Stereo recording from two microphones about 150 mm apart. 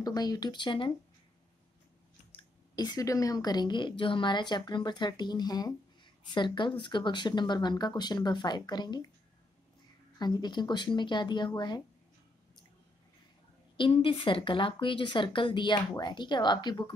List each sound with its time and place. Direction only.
0.0 s a woman's voice: 25° left (ahead or behind)
2.3 s a woman's voice: 25° left (ahead or behind)
10.1 s a woman's voice: 30° left (ahead or behind)
13.7 s a woman's voice: 35° left (ahead or behind)